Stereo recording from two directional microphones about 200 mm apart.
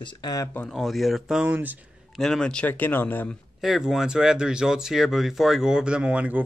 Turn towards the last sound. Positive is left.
turn(degrees=-5)  # may be behind; listen again after turning